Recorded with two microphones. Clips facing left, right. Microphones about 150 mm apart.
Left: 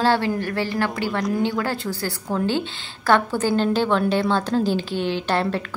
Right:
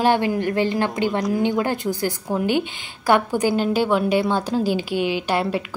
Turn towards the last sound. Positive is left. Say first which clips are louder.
# right 1 dB
turn(degrees=-10)  # may be behind; listen again after turning